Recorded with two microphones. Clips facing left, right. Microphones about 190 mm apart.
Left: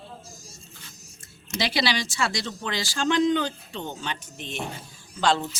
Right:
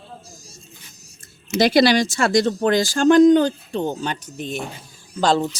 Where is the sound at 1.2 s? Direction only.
45° right (ahead or behind).